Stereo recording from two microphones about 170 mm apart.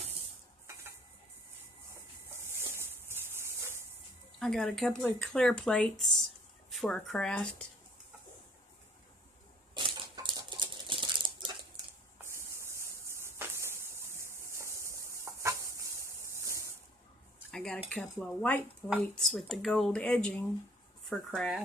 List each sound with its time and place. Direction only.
2.4 s wood: 15° right (ahead or behind)
4.4 s speech: 5° left (ahead or behind)
9.8 s a sound: 25° right (ahead or behind)
12.2 s a sound: 15° right (ahead or behind)
16.3 s spray: 15° right (ahead or behind)
17.5 s cutlery: 5° left (ahead or behind)
19.1 s speech: 5° left (ahead or behind)